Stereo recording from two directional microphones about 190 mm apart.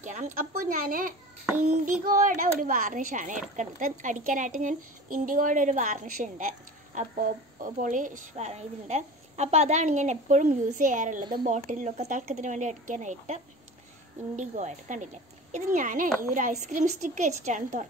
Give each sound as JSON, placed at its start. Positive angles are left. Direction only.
{"t": 0.0, "sound": "a woman's voice", "side_deg": -40}